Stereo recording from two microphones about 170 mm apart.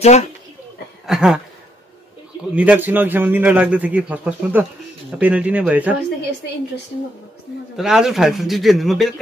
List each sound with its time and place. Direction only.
0.0 s speech: 40° left (ahead or behind)
1.0 s a sound: 5° right (ahead or behind)
2.5 s a man's voice: 10° right (ahead or behind)
7.7 s a man's voice: 5° right (ahead or behind)